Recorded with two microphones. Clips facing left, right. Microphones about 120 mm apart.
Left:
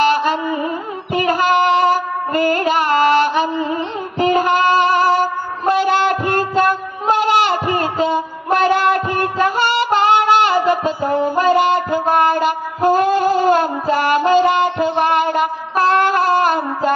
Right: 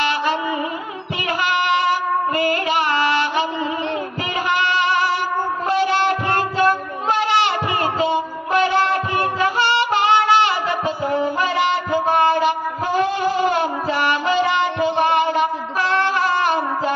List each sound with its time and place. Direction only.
0.0 s music: 45° left (ahead or behind)
10.9 s mantra: 45° left (ahead or behind)